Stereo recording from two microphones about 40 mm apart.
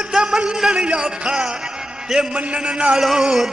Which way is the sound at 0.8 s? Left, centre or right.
Right.